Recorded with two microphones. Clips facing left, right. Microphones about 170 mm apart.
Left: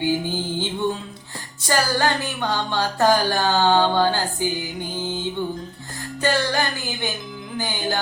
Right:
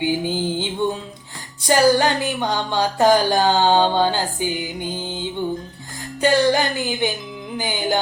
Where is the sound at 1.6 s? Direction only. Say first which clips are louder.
Right 6 dB; 15° right (ahead or behind).